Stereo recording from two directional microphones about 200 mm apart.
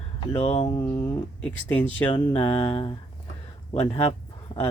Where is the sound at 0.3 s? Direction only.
30° left (ahead or behind).